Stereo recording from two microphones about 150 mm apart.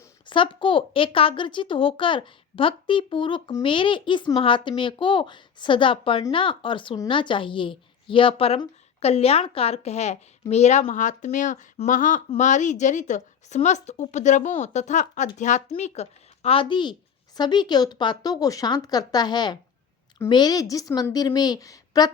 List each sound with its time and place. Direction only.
0.3 s a woman's voice: 35° left (ahead or behind)